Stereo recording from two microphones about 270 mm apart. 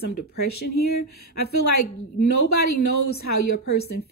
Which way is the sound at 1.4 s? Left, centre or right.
Left.